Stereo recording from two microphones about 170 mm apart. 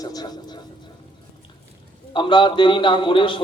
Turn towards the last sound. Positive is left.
turn(degrees=30)  # may be behind; listen again after turning